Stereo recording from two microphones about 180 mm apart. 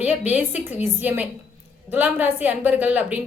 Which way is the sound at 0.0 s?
10° right (ahead or behind).